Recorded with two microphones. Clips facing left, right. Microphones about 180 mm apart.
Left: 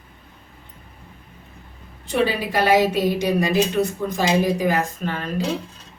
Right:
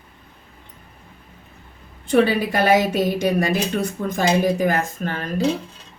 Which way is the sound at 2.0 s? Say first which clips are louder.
Right 4 dB; 50° right (ahead or behind).